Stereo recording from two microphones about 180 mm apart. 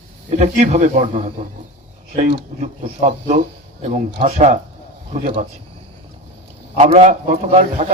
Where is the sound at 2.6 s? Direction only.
35° right (ahead or behind).